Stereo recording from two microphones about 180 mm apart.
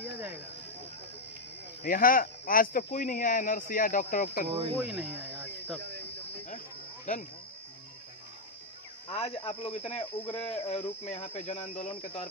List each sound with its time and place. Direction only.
1.8 s speech: 50° left (ahead or behind)
4.5 s speech: 35° right (ahead or behind)
4.7 s speech: 10° right (ahead or behind)
5.2 s cricket: 10° right (ahead or behind)
9.1 s speech: 30° left (ahead or behind)